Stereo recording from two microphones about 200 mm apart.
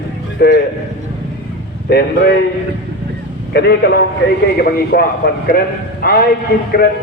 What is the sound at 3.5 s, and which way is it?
Speech, 55° left (ahead or behind).